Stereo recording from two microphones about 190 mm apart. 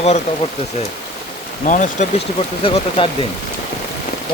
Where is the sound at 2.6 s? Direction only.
30° left (ahead or behind).